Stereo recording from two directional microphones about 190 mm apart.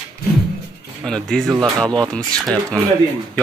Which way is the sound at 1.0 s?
5° left (ahead or behind).